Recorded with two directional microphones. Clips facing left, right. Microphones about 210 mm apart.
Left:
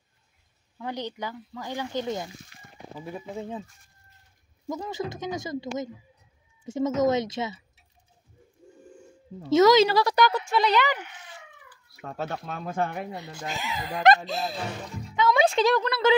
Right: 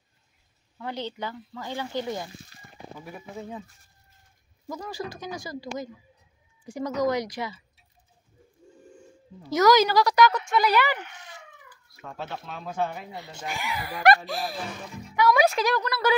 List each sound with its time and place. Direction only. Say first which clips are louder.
0.7 s speech: even; 15° left (ahead or behind)
4.6 s speech: left 3 dB; 20° left (ahead or behind)
9.4 s speech: left 2 dB; 25° left (ahead or behind)
12.1 s speech: left 4 dB; 45° left (ahead or behind)
13.5 s speech: even; 20° left (ahead or behind)